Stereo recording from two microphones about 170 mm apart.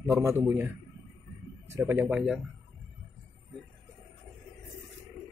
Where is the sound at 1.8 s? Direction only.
15° right (ahead or behind).